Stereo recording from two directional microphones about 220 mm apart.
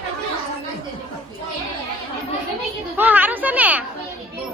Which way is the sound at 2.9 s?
10° right (ahead or behind).